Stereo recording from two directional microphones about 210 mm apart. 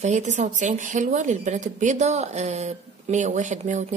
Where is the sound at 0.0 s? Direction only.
35° right (ahead or behind).